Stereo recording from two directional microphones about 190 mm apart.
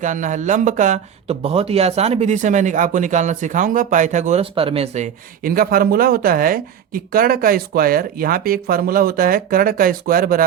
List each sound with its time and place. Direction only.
0.0 s speech: 40° right (ahead or behind)